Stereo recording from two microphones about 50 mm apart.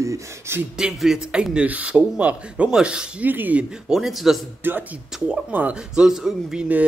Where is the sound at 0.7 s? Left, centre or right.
Centre.